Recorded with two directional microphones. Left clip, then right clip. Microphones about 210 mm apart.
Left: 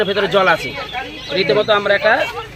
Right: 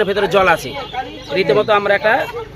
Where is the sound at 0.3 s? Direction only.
15° right (ahead or behind).